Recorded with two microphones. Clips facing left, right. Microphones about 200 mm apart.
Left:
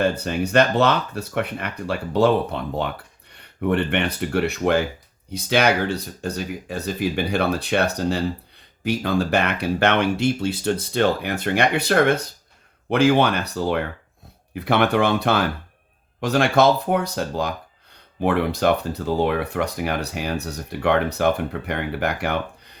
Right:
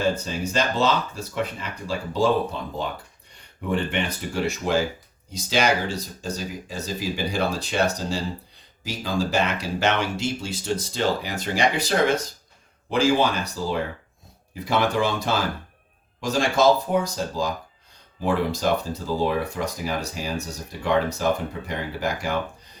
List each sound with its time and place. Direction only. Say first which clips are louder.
0.0 s speech: left 3 dB; 65° left (ahead or behind)